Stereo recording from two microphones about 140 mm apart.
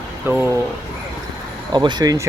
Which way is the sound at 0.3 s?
15° right (ahead or behind).